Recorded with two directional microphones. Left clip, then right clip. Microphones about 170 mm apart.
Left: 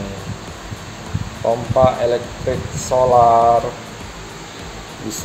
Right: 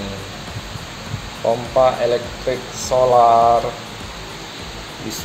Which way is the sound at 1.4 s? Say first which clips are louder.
Left 1 dB; 5° left (ahead or behind).